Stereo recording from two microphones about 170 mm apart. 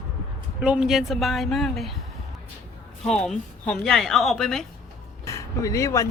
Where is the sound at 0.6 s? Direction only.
5° right (ahead or behind).